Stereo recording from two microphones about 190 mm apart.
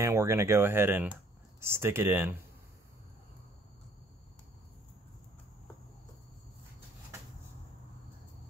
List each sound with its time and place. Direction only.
0.0 s speech: 15° right (ahead or behind)